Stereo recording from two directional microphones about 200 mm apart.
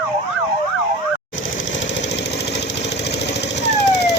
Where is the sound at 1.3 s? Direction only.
70° left (ahead or behind).